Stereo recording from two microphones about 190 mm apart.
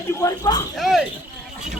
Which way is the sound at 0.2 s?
20° left (ahead or behind).